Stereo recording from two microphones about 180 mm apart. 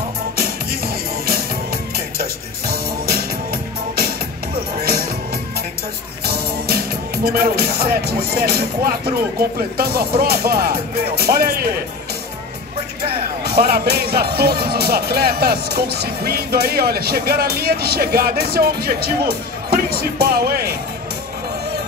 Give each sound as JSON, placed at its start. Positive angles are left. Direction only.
{"t": 0.4, "sound": "music", "side_deg": -55}
{"t": 4.8, "sound": "music", "side_deg": -60}
{"t": 6.2, "sound": "speech", "side_deg": -55}
{"t": 13.4, "sound": "speech", "side_deg": -60}